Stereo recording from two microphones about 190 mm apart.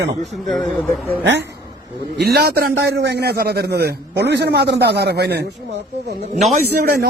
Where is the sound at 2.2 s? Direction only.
55° right (ahead or behind).